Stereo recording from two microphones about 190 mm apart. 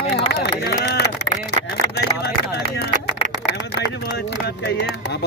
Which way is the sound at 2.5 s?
60° left (ahead or behind).